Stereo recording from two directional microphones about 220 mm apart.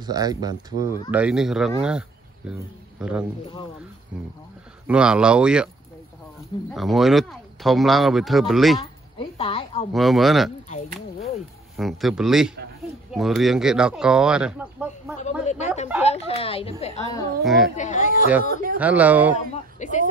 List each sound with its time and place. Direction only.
0.0 s speech: 15° right (ahead or behind)
1.1 s a man's voice: 5° right (ahead or behind)
4.8 s speech: 5° right (ahead or behind)
6.7 s speech: centre (ahead or behind)
8.7 s a sound: 25° left (ahead or behind)
9.9 s speech: centre (ahead or behind)
11.1 s a sound: 30° left (ahead or behind)
11.7 s speech: centre (ahead or behind)
15.6 s speech: 30° left (ahead or behind)
17.4 s speech: centre (ahead or behind)
17.7 s speech: 35° left (ahead or behind)
18.8 s speech: 5° right (ahead or behind)
19.5 s speech: 35° left (ahead or behind)